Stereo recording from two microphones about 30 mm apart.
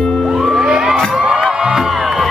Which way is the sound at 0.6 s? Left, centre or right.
Centre.